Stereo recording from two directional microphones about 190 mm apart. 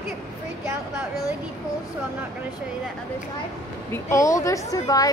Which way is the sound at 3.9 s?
15° left (ahead or behind).